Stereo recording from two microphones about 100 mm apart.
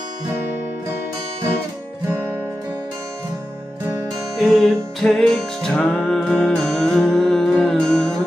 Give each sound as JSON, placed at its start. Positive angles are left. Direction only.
{"t": 4.4, "sound": "music", "side_deg": 0}
{"t": 5.8, "sound": "music", "side_deg": 15}